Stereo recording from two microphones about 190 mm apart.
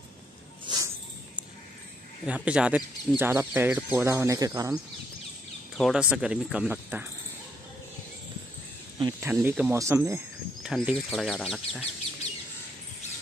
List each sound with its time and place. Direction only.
0.7 s snake: 20° right (ahead or behind)
2.2 s speech: 5° right (ahead or behind)
5.8 s speech: centre (ahead or behind)
9.0 s speech: 10° right (ahead or behind)
10.6 s speech: 5° right (ahead or behind)